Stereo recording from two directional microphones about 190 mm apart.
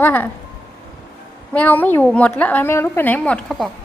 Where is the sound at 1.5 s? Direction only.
10° left (ahead or behind).